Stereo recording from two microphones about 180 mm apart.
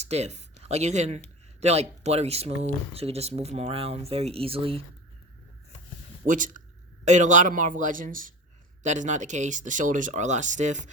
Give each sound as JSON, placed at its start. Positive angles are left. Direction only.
{"t": 0.0, "sound": "speech", "side_deg": -40}
{"t": 6.2, "sound": "speech", "side_deg": -45}